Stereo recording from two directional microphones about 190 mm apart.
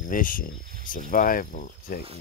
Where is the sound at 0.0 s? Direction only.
45° left (ahead or behind).